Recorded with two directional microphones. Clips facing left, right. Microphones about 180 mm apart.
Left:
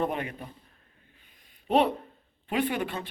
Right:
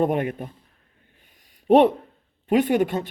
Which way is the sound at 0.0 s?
50° right (ahead or behind).